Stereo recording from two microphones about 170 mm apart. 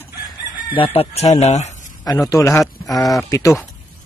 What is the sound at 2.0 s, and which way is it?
Speech, 20° left (ahead or behind).